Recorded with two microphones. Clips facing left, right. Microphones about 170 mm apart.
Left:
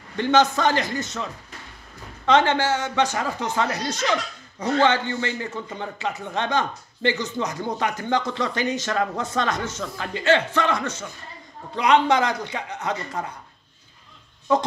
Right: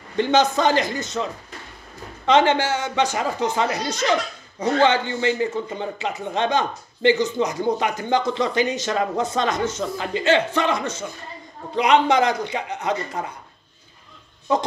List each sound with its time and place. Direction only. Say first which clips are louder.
0.2 s a man's voice: right 1 dB; 20° right (ahead or behind)